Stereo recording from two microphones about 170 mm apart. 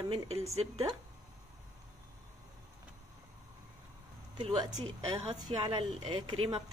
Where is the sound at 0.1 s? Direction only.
35° right (ahead or behind).